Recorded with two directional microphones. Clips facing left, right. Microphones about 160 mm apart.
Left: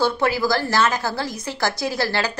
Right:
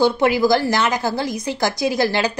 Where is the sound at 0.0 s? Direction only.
20° right (ahead or behind).